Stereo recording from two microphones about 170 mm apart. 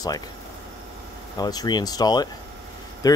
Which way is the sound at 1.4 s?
25° left (ahead or behind).